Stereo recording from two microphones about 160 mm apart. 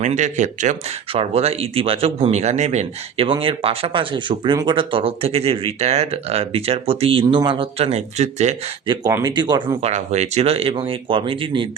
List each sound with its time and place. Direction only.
0.0 s speech: 50° right (ahead or behind)
1.1 s speech: 35° right (ahead or behind)
8.9 s speech: 20° right (ahead or behind)
9.9 s speech: 45° right (ahead or behind)